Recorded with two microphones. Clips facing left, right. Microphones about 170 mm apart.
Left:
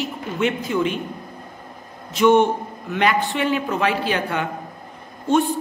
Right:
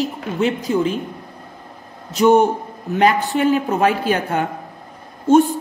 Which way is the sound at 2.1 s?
40° right (ahead or behind).